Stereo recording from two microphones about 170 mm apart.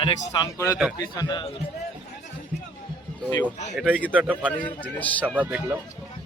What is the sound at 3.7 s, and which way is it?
Speech, 5° right (ahead or behind).